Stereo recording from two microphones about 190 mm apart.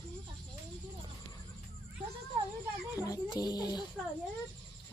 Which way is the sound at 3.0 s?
20° left (ahead or behind).